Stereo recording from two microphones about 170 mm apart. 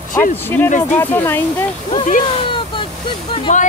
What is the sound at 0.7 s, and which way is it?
Speech, 45° left (ahead or behind).